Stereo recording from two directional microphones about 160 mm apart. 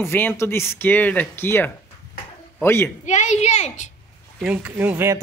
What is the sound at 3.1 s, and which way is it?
Speech, 45° left (ahead or behind).